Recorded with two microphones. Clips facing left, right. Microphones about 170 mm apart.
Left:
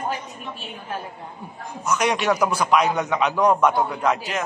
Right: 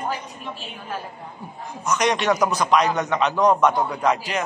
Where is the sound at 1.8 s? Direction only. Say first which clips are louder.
Right 1 dB; 5° left (ahead or behind).